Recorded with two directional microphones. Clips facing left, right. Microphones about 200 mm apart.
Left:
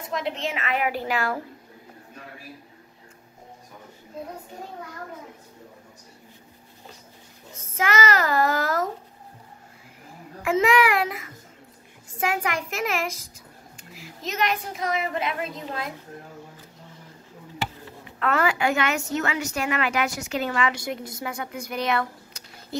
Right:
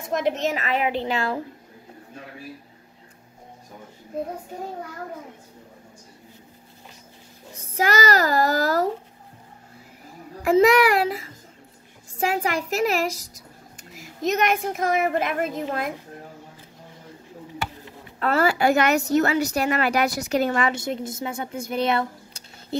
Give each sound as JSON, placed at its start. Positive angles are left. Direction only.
{"t": 0.1, "sound": "a woman's voice", "side_deg": -45}
{"t": 7.6, "sound": "a woman's voice", "side_deg": -35}
{"t": 10.4, "sound": "a woman's voice", "side_deg": -40}
{"t": 18.2, "sound": "a woman's voice", "side_deg": -35}
{"t": 20.7, "sound": "speech", "side_deg": -25}